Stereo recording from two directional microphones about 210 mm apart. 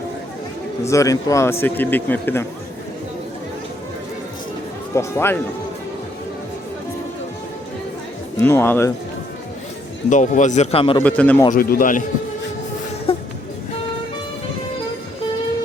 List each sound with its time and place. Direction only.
0.9 s a man's voice: 15° left (ahead or behind)
4.9 s a man's voice: 10° left (ahead or behind)
8.4 s a man's voice: 10° left (ahead or behind)
10.1 s a man's voice: 35° left (ahead or behind)
11.0 s a man's voice: 5° left (ahead or behind)
11.5 s a man's voice: 45° left (ahead or behind)
13.1 s a sound: 25° left (ahead or behind)